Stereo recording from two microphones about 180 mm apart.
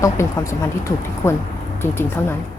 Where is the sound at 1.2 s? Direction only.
15° left (ahead or behind).